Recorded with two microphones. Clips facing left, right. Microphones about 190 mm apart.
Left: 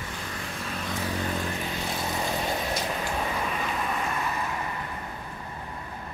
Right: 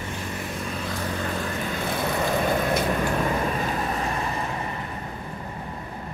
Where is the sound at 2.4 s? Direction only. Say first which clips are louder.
Right 6 dB; 55° right (ahead or behind); by 4.3 s 35° right (ahead or behind).